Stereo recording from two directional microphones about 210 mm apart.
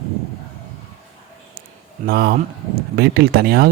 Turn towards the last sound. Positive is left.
turn(degrees=-45)  # may be behind; listen again after turning